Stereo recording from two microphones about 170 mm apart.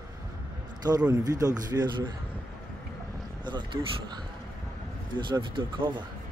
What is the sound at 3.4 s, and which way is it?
Speech, 25° right (ahead or behind).